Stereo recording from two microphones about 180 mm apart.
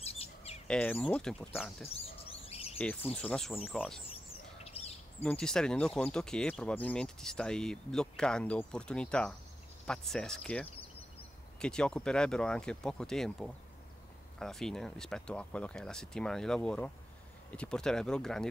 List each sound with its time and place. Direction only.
0.0 s bird: 35° left (ahead or behind)
0.7 s speech: 5° left (ahead or behind)
2.4 s bird: 35° left (ahead or behind)
2.8 s speech: 5° left (ahead or behind)
4.6 s bird: 35° left (ahead or behind)
5.2 s speech: 5° left (ahead or behind)